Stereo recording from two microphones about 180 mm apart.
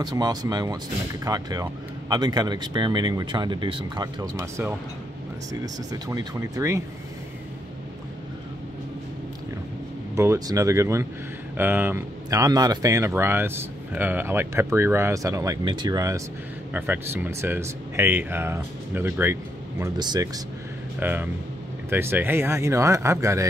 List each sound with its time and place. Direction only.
0.0 s speech: 20° right (ahead or behind)
10.1 s speech: 15° right (ahead or behind)
21.0 s speech: 10° right (ahead or behind)